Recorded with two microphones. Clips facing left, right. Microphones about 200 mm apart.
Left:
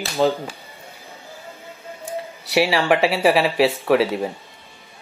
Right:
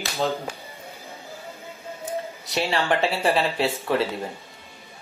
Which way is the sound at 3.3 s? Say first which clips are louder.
Left 5 dB; 80° left.